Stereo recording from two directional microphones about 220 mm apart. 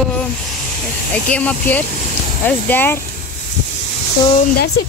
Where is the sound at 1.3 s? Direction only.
5° left (ahead or behind).